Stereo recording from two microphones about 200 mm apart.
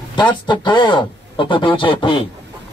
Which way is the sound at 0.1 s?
25° left (ahead or behind).